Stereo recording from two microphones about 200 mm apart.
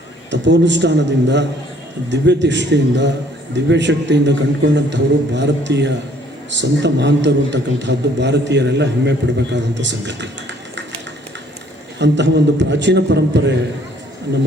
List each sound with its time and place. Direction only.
0.3 s a man's voice: 60° right (ahead or behind)
11.9 s a man's voice: 60° right (ahead or behind)